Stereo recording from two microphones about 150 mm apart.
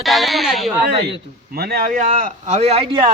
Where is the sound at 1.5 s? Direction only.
90° right.